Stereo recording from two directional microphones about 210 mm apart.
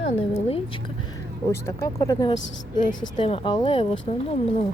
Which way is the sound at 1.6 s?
15° left (ahead or behind).